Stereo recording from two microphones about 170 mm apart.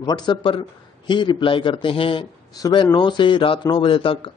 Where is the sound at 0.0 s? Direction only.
25° left (ahead or behind).